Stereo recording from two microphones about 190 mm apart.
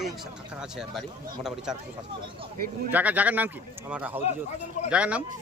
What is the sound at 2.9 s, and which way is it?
Speech, 10° right (ahead or behind).